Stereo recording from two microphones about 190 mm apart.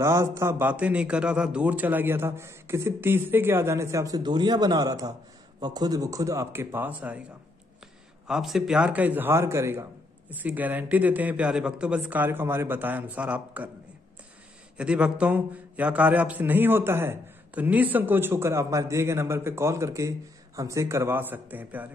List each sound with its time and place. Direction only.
0.0 s a man's voice: 15° right (ahead or behind)
8.3 s a man's voice: centre (ahead or behind)
14.8 s a man's voice: 5° right (ahead or behind)